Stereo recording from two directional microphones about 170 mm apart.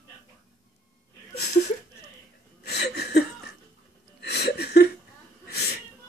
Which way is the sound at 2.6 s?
75° left (ahead or behind).